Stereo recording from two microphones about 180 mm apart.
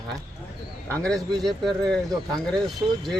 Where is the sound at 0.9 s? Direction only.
5° left (ahead or behind).